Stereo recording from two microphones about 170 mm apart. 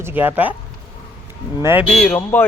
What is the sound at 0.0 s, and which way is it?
Speech, 10° right (ahead or behind).